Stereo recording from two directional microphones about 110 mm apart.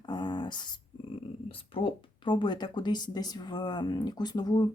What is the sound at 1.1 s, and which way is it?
Speech, 55° left (ahead or behind).